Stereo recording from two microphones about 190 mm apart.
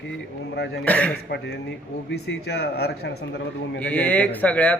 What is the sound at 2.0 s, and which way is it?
Speech, 60° left (ahead or behind).